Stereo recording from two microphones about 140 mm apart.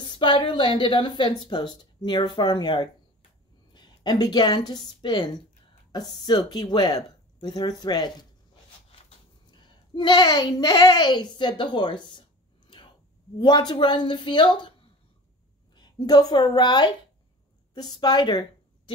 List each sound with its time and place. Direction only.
0.0 s a woman's voice: 35° left (ahead or behind)
9.5 s a woman's voice: 35° left (ahead or behind)
15.7 s a woman's voice: 30° left (ahead or behind)